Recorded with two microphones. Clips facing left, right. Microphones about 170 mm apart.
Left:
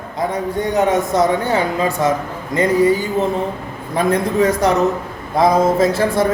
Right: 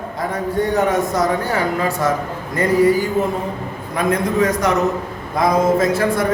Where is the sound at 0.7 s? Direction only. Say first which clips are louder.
Left 4 dB; 20° left (ahead or behind).